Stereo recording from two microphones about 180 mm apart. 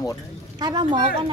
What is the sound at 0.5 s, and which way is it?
Speech, 20° right (ahead or behind).